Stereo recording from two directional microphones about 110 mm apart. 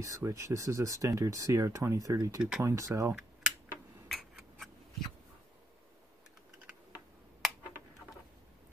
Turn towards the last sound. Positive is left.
turn(degrees=0)  # may be behind; listen again after turning